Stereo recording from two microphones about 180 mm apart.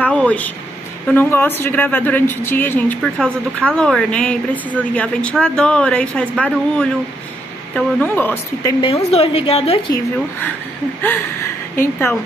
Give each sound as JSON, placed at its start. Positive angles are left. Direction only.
{"t": 0.0, "sound": "speech", "side_deg": 5}
{"t": 8.8, "sound": "a woman's voice", "side_deg": 30}
{"t": 11.8, "sound": "speech", "side_deg": 15}